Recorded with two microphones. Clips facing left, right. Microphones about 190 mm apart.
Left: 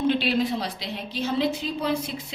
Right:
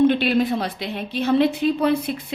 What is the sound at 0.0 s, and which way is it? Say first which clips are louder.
A woman's voice: right 6 dB; 55° right (ahead or behind).